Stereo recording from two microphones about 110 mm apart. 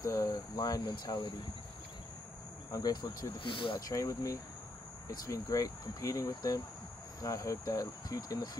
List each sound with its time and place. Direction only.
0.0 s speech: 30° left (ahead or behind)
2.7 s speech: 35° left (ahead or behind)
3.9 s speech: 30° left (ahead or behind)